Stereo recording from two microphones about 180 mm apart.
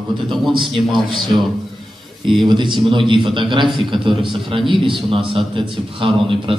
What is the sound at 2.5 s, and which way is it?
A man's voice, 25° right (ahead or behind).